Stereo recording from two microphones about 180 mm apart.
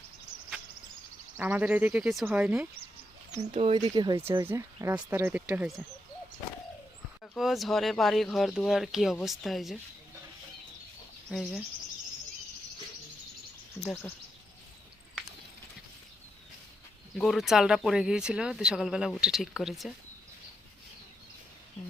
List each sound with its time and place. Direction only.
1.4 s speech: 10° right (ahead or behind)
3.3 s speech: 40° right (ahead or behind)
3.8 s speech: 20° right (ahead or behind); by 5.8 s 5° right (ahead or behind)
7.3 s speech: centre (ahead or behind)
11.3 s speech: centre (ahead or behind)
17.2 s speech: centre (ahead or behind)